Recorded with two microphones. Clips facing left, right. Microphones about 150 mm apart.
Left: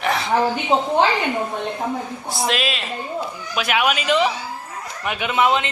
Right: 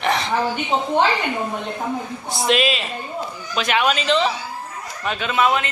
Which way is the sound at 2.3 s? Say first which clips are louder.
Right 4 dB; centre (ahead or behind).